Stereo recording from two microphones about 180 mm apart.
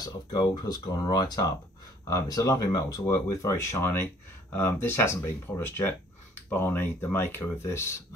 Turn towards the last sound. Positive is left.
turn(degrees=15)  # may be behind; listen again after turning